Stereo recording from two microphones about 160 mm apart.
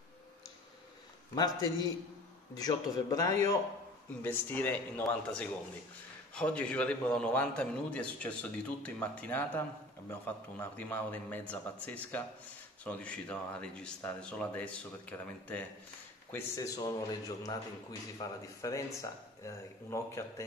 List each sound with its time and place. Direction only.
1.3 s a man's voice: 25° left (ahead or behind)